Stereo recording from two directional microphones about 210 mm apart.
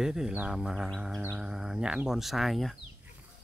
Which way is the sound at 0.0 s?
5° right (ahead or behind).